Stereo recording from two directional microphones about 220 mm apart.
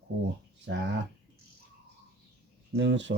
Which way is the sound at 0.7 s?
55° right (ahead or behind).